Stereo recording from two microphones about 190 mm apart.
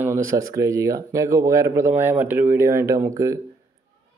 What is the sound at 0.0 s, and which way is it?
Speech, 15° right (ahead or behind).